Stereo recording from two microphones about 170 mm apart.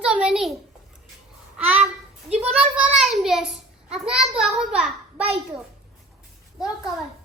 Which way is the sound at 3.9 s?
5° right (ahead or behind).